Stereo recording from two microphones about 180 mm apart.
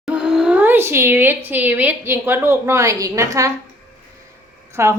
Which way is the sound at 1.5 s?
10° right (ahead or behind).